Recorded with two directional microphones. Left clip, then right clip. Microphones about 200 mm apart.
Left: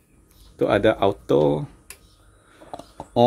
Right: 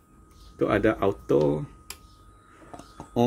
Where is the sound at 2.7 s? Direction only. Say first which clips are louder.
Left 7 dB; 20° left (ahead or behind).